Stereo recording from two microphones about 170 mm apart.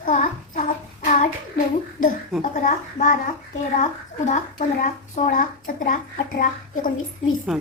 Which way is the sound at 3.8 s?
45° left (ahead or behind).